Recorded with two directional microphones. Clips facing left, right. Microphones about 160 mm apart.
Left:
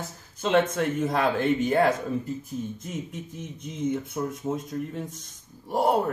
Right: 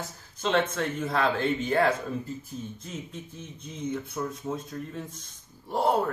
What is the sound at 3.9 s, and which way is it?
Speech, 20° left (ahead or behind).